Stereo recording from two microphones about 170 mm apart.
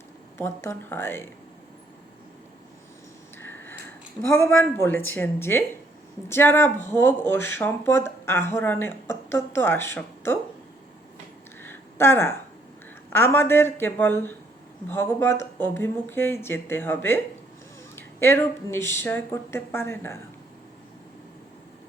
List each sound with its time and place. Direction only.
0.3 s speech: 15° left (ahead or behind)
3.4 s speech: 15° left (ahead or behind)
11.6 s a sound: 15° left (ahead or behind)
13.1 s speech: 15° left (ahead or behind)